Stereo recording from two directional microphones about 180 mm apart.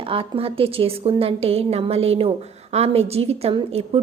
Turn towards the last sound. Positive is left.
turn(degrees=-30)  # may be behind; listen again after turning